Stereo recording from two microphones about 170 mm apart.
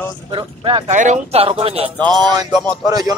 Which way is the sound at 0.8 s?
45° right (ahead or behind).